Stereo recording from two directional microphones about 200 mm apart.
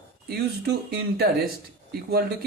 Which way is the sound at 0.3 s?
50° right (ahead or behind).